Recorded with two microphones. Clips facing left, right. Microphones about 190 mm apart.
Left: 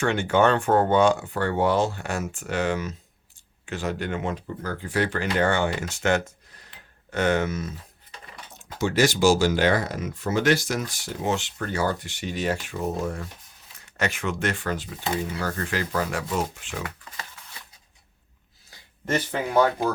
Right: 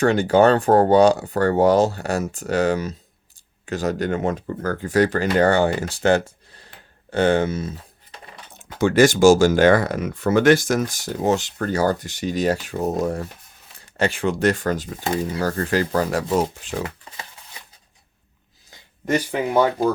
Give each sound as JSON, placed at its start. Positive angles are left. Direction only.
{"t": 0.0, "sound": "speech", "side_deg": -35}
{"t": 8.5, "sound": "speech", "side_deg": -55}
{"t": 18.7, "sound": "speech", "side_deg": -15}